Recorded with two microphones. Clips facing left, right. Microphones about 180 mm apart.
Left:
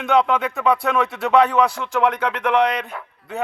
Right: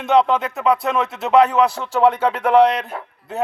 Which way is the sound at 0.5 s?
20° right (ahead or behind).